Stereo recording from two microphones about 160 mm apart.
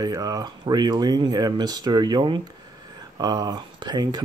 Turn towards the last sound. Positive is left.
turn(degrees=-25)  # may be behind; listen again after turning